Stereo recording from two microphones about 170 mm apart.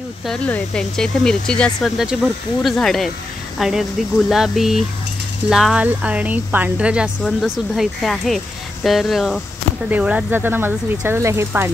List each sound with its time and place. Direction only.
0.3 s speech: 5° left (ahead or behind); by 11.7 s 15° right (ahead or behind)